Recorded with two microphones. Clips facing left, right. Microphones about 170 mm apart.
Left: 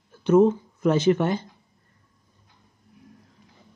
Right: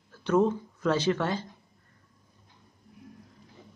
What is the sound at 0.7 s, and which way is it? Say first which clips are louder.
Speech: left 6 dB; 20° left (ahead or behind).